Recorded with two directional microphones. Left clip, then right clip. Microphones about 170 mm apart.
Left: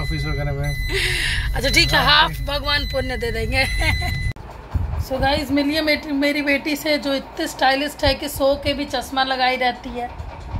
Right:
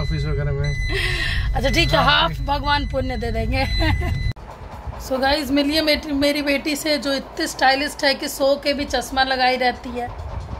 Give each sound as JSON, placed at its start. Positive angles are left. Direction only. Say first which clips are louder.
{"t": 0.8, "sound": "speech", "louder": "left 2 dB", "side_deg": -10}
{"t": 5.2, "sound": "a woman's voice", "louder": "even", "side_deg": -30}